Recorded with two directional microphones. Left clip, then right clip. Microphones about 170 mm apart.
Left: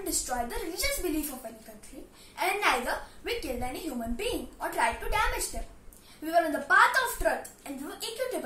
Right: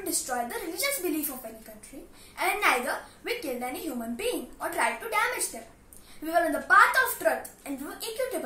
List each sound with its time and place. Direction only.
0.3 s a woman's voice: 10° right (ahead or behind)
2.3 s a woman's voice: 10° right (ahead or behind)